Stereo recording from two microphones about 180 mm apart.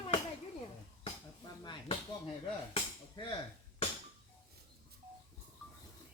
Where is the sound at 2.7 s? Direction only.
25° left (ahead or behind).